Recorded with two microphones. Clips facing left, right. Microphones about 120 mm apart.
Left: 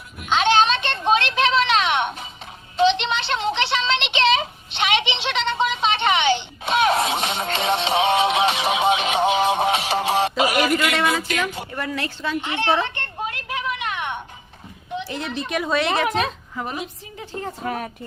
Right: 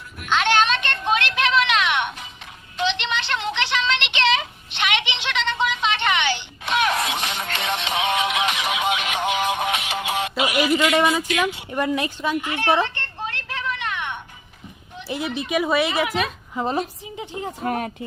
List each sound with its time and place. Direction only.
0.2 s a sound: 20° left (ahead or behind); by 10.9 s 45° left (ahead or behind)
11.7 s a woman's voice: 20° right (ahead or behind)
12.4 s speech: 25° left (ahead or behind)
12.8 s a sound: 20° left (ahead or behind)
15.0 s speech: 5° right (ahead or behind)
16.6 s a woman's voice: 20° right (ahead or behind)
17.7 s speech: 50° right (ahead or behind)